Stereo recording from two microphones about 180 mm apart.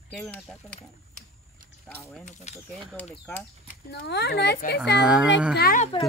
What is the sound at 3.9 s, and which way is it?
Speech, 70° left (ahead or behind).